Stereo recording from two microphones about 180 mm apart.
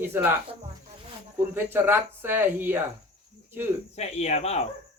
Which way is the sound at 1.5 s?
10° right (ahead or behind).